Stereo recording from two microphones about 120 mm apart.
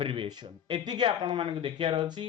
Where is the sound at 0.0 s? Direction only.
50° right (ahead or behind).